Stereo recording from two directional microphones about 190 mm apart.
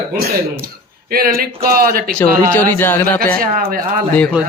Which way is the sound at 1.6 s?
50° right (ahead or behind).